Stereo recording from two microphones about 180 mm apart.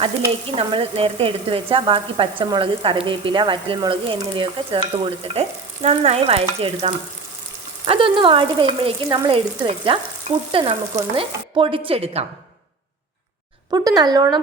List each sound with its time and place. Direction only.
0.3 s speech: 35° right (ahead or behind)
13.7 s speech: 20° right (ahead or behind)